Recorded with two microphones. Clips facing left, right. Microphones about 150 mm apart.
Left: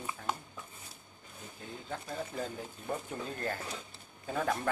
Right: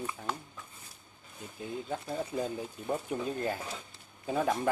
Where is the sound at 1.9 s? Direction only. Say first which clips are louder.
Right 3 dB; 15° right (ahead or behind).